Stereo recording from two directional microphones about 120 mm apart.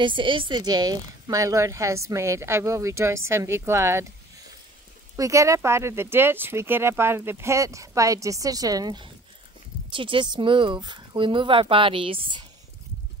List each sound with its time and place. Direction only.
0.0 s speech: 45° right (ahead or behind); by 4.0 s 20° right (ahead or behind)
5.1 s speech: 25° right (ahead or behind); by 12.4 s 45° right (ahead or behind)